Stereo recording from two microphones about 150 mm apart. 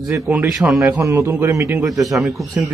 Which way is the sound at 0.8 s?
20° right (ahead or behind).